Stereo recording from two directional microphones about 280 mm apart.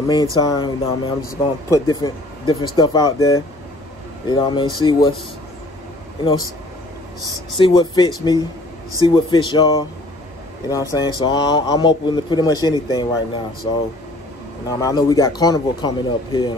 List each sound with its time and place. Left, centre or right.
0.4 s speech: centre
7.5 s speech: centre
14.7 s speech: centre